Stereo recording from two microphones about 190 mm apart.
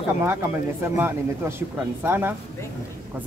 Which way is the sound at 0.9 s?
10° right (ahead or behind).